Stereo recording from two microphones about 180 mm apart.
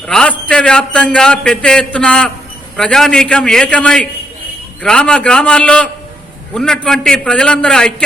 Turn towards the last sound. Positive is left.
turn(degrees=5)  # may be behind; listen again after turning